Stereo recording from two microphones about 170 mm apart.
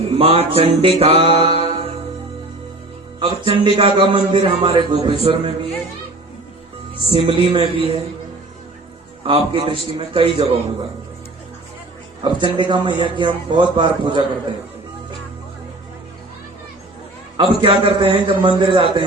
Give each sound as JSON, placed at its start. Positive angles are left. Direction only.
{"t": 0.0, "sound": "mantra", "side_deg": -35}
{"t": 3.2, "sound": "a man's voice", "side_deg": -30}
{"t": 7.1, "sound": "speech", "side_deg": -30}
{"t": 9.2, "sound": "speech", "side_deg": -35}
{"t": 12.2, "sound": "a man's voice", "side_deg": -30}
{"t": 17.3, "sound": "a man's voice", "side_deg": -25}